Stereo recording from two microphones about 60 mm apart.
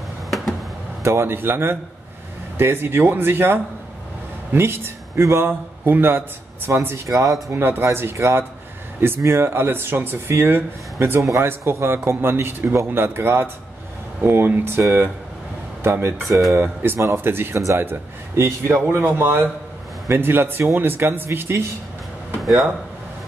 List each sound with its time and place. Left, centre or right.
1.0 s a man's voice: right
7.1 s speech: right
7.5 s speech: right
11.1 s a man's voice: right
16.3 s speech: centre
17.0 s speech: right
18.9 s a man's voice: right